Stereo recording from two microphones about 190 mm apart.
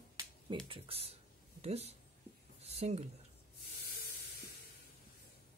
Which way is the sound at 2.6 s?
35° right (ahead or behind).